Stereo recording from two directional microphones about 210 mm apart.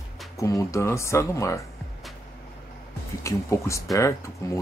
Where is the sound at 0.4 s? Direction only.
15° left (ahead or behind).